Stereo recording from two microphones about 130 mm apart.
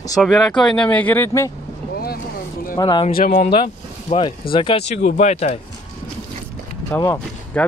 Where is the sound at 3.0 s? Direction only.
80° left.